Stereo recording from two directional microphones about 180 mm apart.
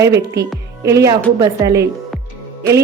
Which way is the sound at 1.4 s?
15° right (ahead or behind).